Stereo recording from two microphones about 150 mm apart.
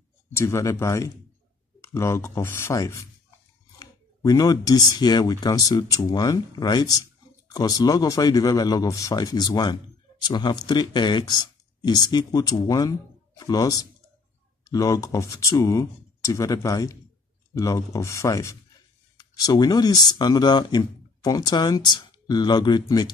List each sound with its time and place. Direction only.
0.3 s speech: 20° left (ahead or behind)